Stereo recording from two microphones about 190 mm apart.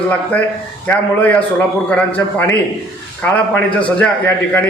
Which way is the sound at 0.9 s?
10° left (ahead or behind).